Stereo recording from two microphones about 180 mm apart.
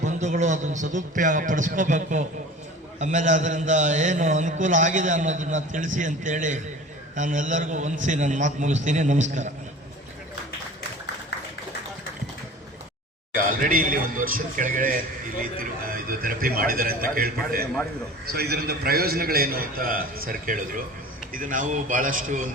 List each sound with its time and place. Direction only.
0.0 s a man's voice: 40° right (ahead or behind)
13.3 s a man's voice: 50° right (ahead or behind)